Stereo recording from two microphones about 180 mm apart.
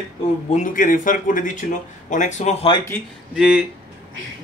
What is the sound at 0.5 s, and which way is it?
A man's voice, 50° left (ahead or behind).